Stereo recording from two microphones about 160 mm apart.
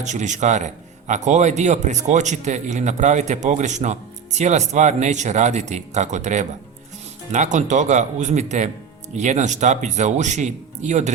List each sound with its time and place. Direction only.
0.0 s a man's voice: 50° right (ahead or behind)